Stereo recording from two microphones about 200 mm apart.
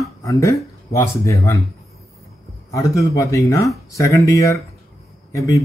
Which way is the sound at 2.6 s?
15° left (ahead or behind).